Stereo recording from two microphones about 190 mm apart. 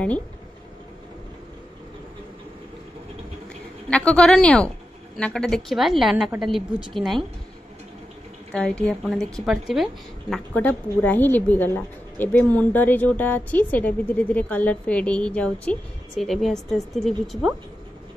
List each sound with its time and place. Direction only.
3.9 s a woman's voice: 5° left (ahead or behind)
8.5 s a woman's voice: 5° left (ahead or behind)